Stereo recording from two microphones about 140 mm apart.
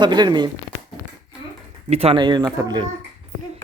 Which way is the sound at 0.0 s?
30° right (ahead or behind).